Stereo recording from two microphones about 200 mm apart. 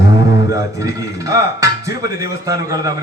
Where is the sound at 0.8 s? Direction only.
15° right (ahead or behind).